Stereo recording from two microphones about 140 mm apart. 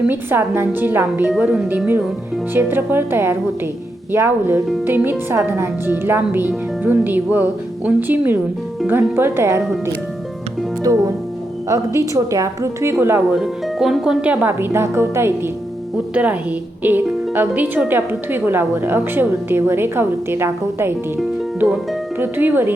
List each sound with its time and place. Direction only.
0.0 s speech: 15° right (ahead or behind)
10.9 s a woman's voice: 25° right (ahead or behind)
13.4 s speech: centre (ahead or behind)
22.2 s speech: 15° right (ahead or behind)